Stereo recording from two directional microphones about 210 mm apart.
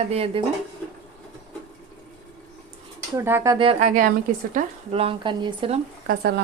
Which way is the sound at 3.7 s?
35° right (ahead or behind).